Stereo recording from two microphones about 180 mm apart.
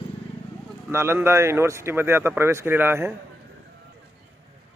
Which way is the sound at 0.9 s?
15° right (ahead or behind).